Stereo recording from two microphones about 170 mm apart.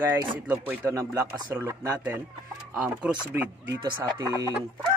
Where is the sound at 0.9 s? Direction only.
20° right (ahead or behind); by 3.2 s 5° right (ahead or behind).